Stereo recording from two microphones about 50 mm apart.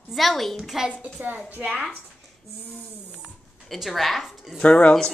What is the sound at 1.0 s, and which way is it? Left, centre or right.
Speech, right.